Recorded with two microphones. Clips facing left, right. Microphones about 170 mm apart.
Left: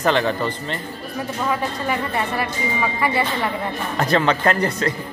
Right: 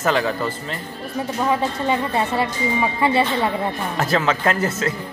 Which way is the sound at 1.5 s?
25° right (ahead or behind).